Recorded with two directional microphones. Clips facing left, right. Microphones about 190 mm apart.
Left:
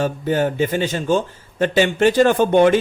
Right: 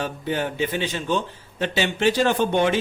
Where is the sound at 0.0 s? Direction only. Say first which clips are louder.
Left 7 dB; 45° left (ahead or behind).